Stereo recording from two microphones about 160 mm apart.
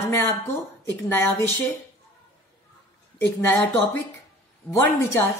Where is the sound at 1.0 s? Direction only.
15° left (ahead or behind).